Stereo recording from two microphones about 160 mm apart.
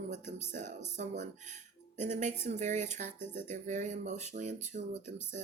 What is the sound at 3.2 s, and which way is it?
Music, 15° left (ahead or behind).